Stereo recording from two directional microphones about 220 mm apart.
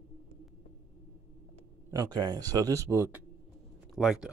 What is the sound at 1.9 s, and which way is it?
Speech, 15° right (ahead or behind).